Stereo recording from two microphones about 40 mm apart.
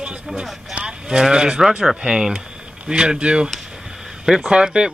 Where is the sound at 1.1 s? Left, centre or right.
Centre.